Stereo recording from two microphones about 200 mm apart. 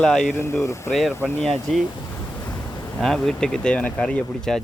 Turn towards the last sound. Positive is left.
turn(degrees=5)  # may be behind; listen again after turning